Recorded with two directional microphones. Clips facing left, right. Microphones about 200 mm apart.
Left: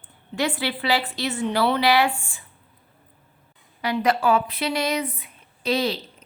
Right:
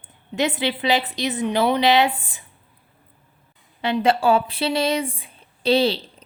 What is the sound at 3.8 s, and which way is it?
Speech, 25° right (ahead or behind).